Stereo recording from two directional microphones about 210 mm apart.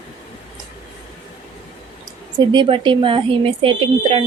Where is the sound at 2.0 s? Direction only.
20° right (ahead or behind).